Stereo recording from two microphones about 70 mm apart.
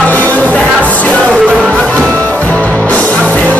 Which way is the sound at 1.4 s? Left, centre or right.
Centre.